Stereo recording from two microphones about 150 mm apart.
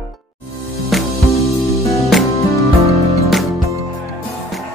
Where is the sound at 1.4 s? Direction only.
20° left (ahead or behind).